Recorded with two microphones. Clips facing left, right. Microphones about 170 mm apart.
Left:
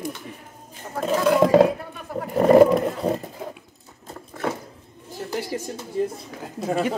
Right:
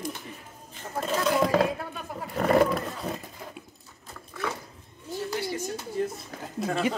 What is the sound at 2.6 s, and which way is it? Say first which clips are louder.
Roaring cats: left 9 dB; 20° left (ahead or behind).